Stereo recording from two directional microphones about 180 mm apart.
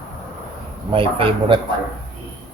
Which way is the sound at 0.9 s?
30° right (ahead or behind).